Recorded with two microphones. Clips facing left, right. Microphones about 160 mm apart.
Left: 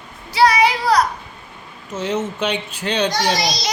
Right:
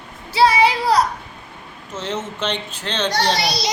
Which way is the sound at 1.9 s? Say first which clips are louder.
Left 4 dB; 10° left (ahead or behind).